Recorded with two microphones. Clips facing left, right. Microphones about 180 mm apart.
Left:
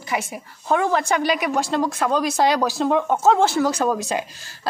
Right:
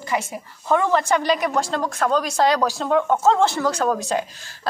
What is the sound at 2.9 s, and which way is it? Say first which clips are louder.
Speech: even; 20° left (ahead or behind).